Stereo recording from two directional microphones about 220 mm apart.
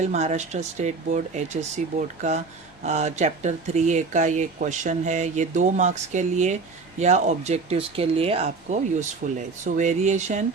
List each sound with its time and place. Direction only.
0.0 s speech: 30° right (ahead or behind)